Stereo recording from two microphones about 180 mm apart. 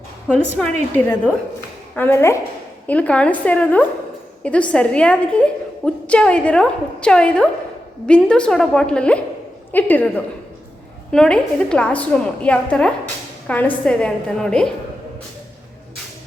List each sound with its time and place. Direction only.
0.3 s a woman's voice: 5° left (ahead or behind)